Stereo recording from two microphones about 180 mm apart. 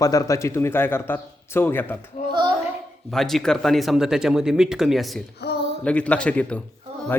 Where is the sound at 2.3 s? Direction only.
25° right (ahead or behind).